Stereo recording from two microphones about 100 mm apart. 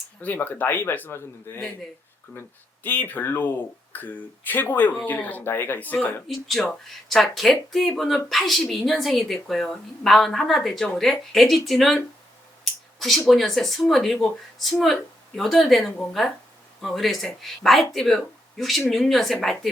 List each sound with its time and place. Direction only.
0.2 s a man's voice: 15° left (ahead or behind)
2.8 s a man's voice: 20° left (ahead or behind)
6.2 s a woman's voice: centre (ahead or behind)